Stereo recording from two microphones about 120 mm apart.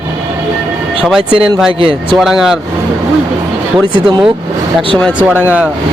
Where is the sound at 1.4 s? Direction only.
5° right (ahead or behind).